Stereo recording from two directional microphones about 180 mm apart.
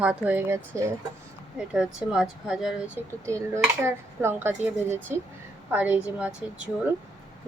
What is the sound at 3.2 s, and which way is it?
Speech, 15° right (ahead or behind).